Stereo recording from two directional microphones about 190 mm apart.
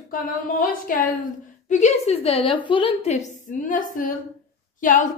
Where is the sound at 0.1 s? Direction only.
45° left (ahead or behind).